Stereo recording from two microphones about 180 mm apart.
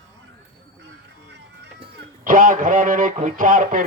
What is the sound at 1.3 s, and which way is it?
Music, 70° right (ahead or behind).